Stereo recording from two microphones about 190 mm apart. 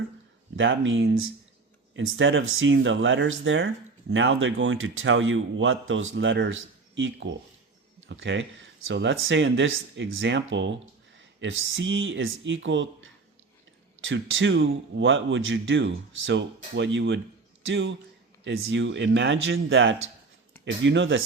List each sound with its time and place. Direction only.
0.5 s speech: 90° right
14.0 s speech: 90° right; by 17.2 s 70° right (ahead or behind)
17.7 s speech: 85° right
18.4 s speech: 70° right (ahead or behind)